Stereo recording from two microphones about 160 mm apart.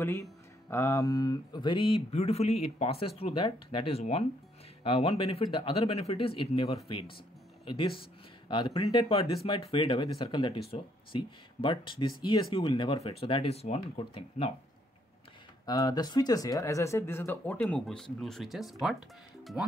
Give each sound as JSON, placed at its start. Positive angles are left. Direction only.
{"t": 0.7, "sound": "speech", "side_deg": 15}
{"t": 15.6, "sound": "speech", "side_deg": 25}